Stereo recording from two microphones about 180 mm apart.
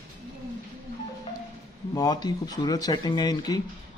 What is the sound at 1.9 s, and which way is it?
Speech, 20° left (ahead or behind).